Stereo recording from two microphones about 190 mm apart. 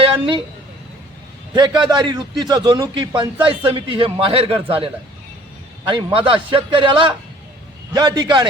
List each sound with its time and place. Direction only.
0.0 s a sound: 25° right (ahead or behind)
1.5 s a man's voice: 20° right (ahead or behind)
5.9 s a man's voice: 25° right (ahead or behind)